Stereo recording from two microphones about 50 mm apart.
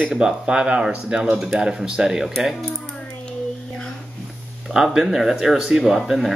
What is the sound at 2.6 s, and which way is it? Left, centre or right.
Typing, centre.